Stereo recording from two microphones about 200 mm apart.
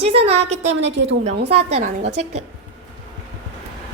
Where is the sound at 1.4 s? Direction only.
30° right (ahead or behind).